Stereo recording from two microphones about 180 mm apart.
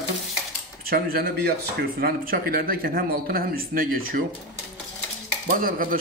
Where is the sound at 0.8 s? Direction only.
55° right (ahead or behind).